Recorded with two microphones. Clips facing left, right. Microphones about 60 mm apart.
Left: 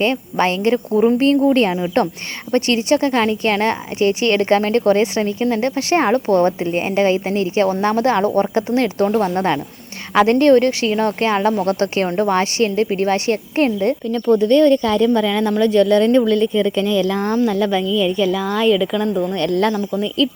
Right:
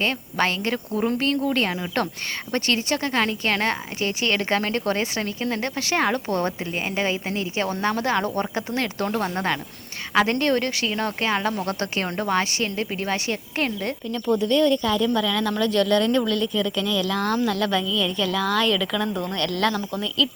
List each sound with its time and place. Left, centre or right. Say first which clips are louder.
0.0 s speech: left 6 dB; left
1.2 s speech: left 9 dB; left
2.5 s a woman's voice: left 8 dB; left
5.2 s speech: left 8 dB; centre
5.6 s a woman's voice: left 6 dB; left
10.2 s a woman's voice: left 9 dB; left
14.1 s speech: left 7 dB; left
15.2 s speech: left 7 dB; left; by 19.4 s centre
19.4 s speech: left 5 dB; left